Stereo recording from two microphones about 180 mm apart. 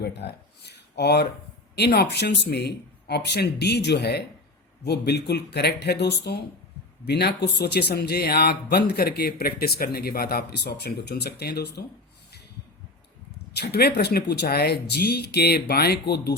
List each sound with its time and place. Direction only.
0.0 s speech: 70° left (ahead or behind)
13.5 s speech: 65° left (ahead or behind)